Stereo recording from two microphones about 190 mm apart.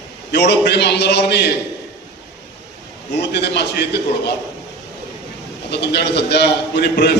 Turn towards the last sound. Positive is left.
turn(degrees=60)  # may be behind; listen again after turning